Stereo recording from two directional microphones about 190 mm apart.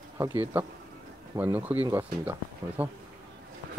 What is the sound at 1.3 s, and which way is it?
Speech, 10° right (ahead or behind).